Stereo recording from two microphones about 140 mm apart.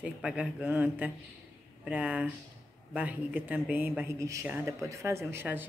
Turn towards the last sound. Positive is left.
turn(degrees=-15)  # may be behind; listen again after turning